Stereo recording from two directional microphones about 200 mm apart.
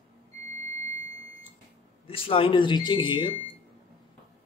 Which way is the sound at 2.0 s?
25° left (ahead or behind).